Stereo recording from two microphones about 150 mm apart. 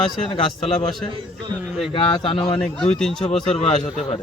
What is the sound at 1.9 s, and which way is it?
Speech, 35° left (ahead or behind).